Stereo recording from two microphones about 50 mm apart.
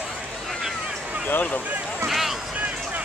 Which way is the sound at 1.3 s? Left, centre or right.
Left.